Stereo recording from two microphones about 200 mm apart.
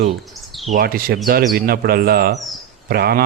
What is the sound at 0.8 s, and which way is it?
A man's voice, 50° right (ahead or behind).